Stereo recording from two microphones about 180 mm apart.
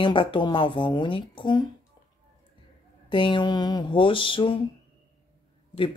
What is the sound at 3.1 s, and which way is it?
Speech, 25° left (ahead or behind).